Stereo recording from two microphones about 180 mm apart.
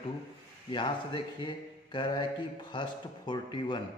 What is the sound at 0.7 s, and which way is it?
Speech, 25° left (ahead or behind).